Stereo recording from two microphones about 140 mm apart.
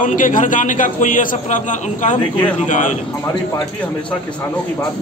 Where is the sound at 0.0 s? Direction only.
70° left (ahead or behind).